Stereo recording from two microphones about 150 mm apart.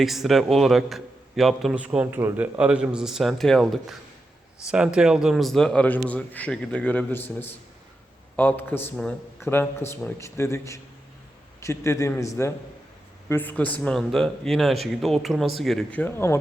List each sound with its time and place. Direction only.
0.0 s a man's voice: centre (ahead or behind); by 16.4 s 15° left (ahead or behind)